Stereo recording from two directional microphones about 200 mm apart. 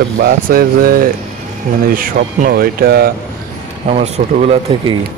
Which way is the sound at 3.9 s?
35° right (ahead or behind).